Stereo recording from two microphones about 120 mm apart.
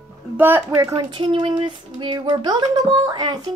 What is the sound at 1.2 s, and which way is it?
Music, 45° right (ahead or behind).